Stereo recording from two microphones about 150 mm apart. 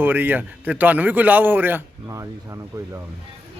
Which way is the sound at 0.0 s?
15° right (ahead or behind).